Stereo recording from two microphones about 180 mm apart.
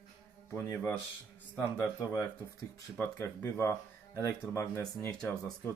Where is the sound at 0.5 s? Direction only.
15° left (ahead or behind).